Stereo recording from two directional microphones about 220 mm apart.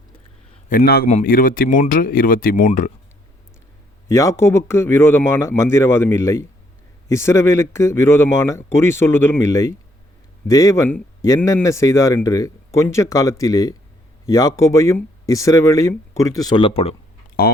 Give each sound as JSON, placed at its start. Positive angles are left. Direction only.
{"t": 0.7, "sound": "speech", "side_deg": 40}
{"t": 4.1, "sound": "speech", "side_deg": 15}